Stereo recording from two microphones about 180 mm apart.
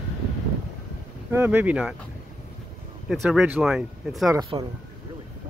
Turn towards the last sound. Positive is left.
turn(degrees=-25)  # may be behind; listen again after turning